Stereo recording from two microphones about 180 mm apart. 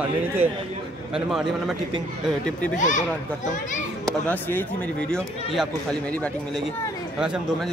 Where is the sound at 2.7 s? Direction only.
45° left (ahead or behind).